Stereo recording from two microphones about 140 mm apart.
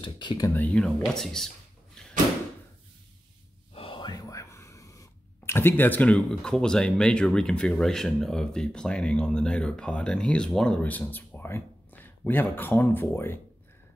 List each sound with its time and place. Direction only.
0.0 s speech: 35° left (ahead or behind)
0.6 s speech: 5° left (ahead or behind)
3.7 s speech: 40° left (ahead or behind); by 13.4 s 15° left (ahead or behind)